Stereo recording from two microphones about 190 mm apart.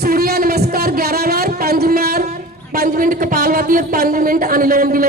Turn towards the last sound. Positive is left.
turn(degrees=-50)  # may be behind; listen again after turning